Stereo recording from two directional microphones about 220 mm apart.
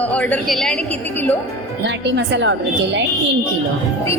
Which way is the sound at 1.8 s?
55° right (ahead or behind).